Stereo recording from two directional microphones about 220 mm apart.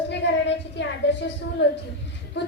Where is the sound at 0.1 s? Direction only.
50° left (ahead or behind).